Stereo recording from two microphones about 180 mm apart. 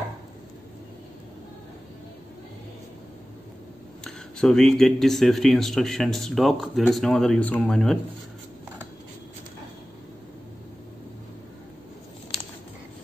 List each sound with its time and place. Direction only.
4.0 s speech: 5° left (ahead or behind)